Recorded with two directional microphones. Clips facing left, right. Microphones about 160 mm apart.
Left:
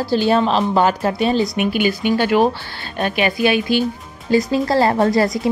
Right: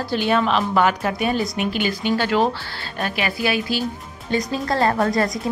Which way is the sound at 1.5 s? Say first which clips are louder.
Left 5 dB; 15° left (ahead or behind).